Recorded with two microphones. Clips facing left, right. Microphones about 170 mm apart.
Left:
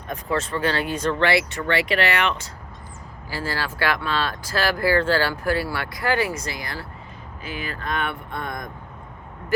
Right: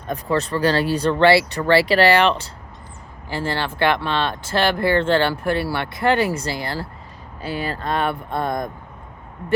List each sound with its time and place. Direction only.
0.1 s speech: 35° right (ahead or behind)